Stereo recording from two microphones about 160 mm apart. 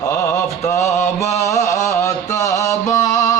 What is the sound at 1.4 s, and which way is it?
Music, 20° left (ahead or behind).